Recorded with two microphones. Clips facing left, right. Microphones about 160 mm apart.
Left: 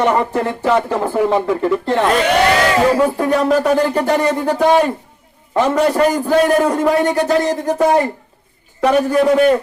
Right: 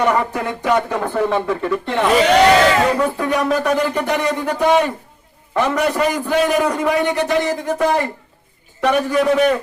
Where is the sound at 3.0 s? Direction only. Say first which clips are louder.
Left 3 dB; 30° left (ahead or behind).